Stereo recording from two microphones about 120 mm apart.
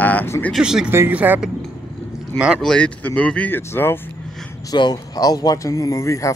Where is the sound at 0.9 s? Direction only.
15° right (ahead or behind).